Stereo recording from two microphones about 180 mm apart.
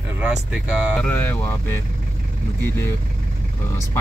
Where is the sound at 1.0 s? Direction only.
10° left (ahead or behind).